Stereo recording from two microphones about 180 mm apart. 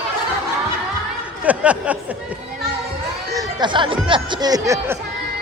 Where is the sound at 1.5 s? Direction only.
5° right (ahead or behind).